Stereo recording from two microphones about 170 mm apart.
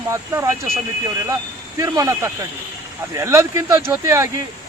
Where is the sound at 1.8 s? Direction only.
20° right (ahead or behind).